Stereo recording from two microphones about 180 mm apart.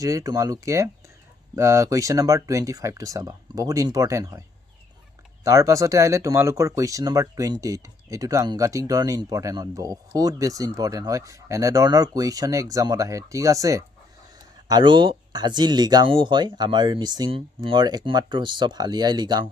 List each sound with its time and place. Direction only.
0.0 s speech: 20° right (ahead or behind)